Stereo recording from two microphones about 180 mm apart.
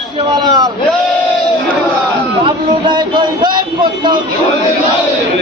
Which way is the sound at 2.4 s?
25° right (ahead or behind).